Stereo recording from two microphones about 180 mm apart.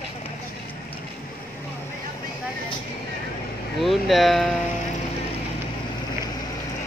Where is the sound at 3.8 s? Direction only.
Centre (ahead or behind).